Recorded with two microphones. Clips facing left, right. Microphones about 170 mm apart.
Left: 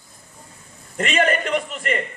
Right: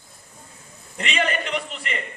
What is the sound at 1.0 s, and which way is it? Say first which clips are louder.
A man's voice: left 5 dB; 45° left (ahead or behind).